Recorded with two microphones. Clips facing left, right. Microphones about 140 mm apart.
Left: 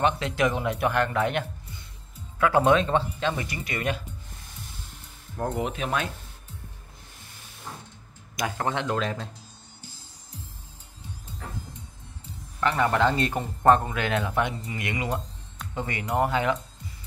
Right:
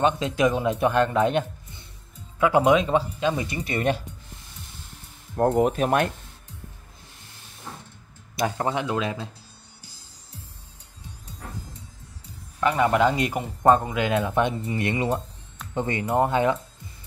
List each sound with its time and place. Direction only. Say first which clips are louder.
0.0 s speech: right 3 dB; 20° right (ahead or behind)
5.3 s speech: right 9 dB; 50° right (ahead or behind)
8.4 s speech: right 4 dB; 30° right (ahead or behind)
8.6 s speech: right 1 dB; 10° right (ahead or behind)
12.5 s speech: right 3 dB; 15° right (ahead or behind)